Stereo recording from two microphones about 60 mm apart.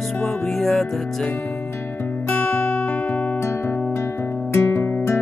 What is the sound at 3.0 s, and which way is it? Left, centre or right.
Music, left.